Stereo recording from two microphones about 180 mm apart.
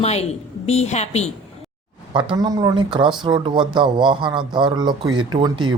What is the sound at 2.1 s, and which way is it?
Speech, 20° right (ahead or behind).